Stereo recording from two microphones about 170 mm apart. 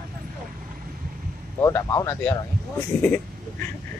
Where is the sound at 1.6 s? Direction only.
20° left (ahead or behind).